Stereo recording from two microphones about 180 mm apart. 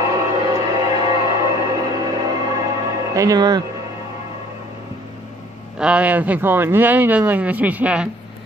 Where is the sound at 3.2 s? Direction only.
20° right (ahead or behind).